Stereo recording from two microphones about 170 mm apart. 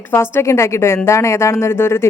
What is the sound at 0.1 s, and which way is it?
A woman's voice, 15° left (ahead or behind).